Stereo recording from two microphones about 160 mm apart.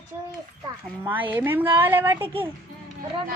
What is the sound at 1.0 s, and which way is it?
A woman's voice, 10° right (ahead or behind).